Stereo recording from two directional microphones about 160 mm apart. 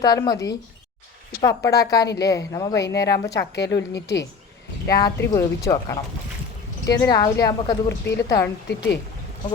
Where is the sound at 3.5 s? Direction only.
90° left.